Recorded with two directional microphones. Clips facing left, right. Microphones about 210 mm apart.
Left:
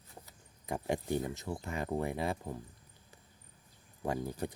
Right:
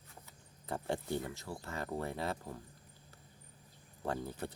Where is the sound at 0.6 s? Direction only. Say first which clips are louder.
Left 3 dB; 15° left (ahead or behind).